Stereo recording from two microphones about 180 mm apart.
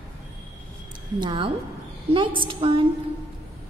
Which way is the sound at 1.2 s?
25° right (ahead or behind).